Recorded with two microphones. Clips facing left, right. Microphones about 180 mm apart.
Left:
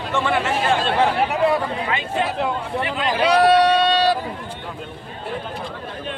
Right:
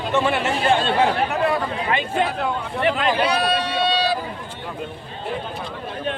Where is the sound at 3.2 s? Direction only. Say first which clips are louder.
Left 6 dB; 90° left.